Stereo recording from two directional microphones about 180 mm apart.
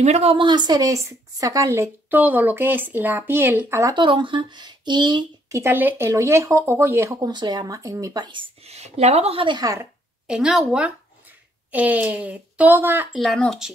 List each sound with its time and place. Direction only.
0.0 s speech: 35° right (ahead or behind); by 3.9 s 15° right (ahead or behind)
3.9 s speech: 25° right (ahead or behind)
10.2 s a woman's voice: 5° right (ahead or behind)
13.2 s a woman's voice: centre (ahead or behind)